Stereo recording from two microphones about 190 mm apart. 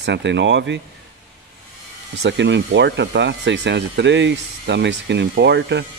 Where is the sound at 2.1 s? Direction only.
70° right (ahead or behind).